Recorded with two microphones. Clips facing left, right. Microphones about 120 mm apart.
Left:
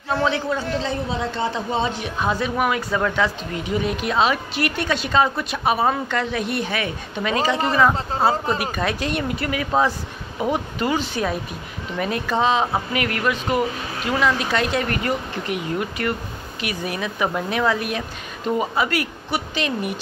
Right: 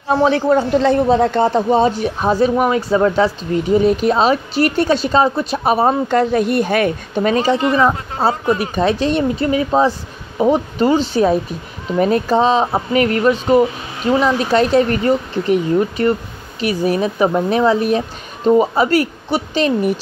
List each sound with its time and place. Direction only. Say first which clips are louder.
0.2 s a man's voice: right 10 dB; 50° right (ahead or behind)
7.7 s a man's voice: right 3 dB; 25° right (ahead or behind)